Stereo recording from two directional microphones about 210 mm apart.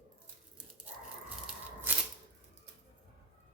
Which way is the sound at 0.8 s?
5° right (ahead or behind).